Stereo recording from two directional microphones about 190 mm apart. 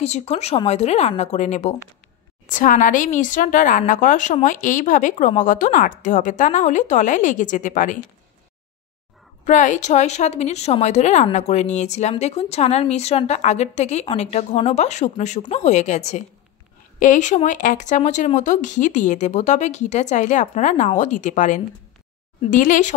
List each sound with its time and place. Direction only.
0.0 s speech: 35° left (ahead or behind)
9.4 s speech: 40° left (ahead or behind)